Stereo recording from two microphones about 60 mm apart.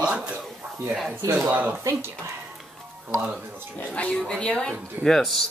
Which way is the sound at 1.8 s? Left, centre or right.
Right.